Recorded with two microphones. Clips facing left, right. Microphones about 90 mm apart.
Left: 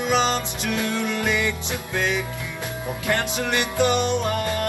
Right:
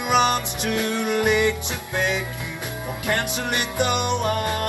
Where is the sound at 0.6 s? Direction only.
20° right (ahead or behind).